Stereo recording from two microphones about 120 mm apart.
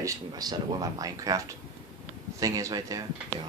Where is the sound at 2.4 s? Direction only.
30° right (ahead or behind).